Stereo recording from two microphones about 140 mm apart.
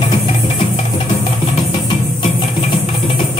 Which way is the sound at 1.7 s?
35° left (ahead or behind).